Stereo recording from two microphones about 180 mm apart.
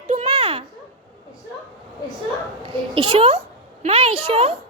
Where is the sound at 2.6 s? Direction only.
30° right (ahead or behind).